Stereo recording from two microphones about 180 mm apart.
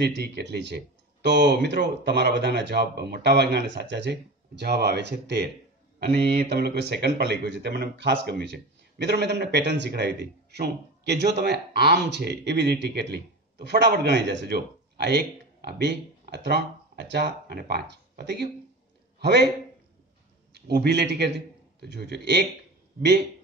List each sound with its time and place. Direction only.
0.0 s a man's voice: 65° right (ahead or behind)
20.5 s a man's voice: 65° right (ahead or behind)